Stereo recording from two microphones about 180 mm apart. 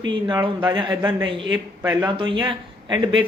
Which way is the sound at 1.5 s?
10° right (ahead or behind).